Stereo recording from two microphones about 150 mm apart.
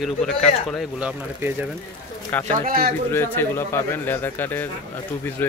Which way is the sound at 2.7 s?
80° right.